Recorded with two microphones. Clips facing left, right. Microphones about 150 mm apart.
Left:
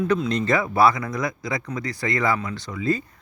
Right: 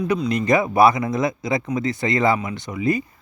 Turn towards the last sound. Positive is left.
turn(degrees=-15)  # may be behind; listen again after turning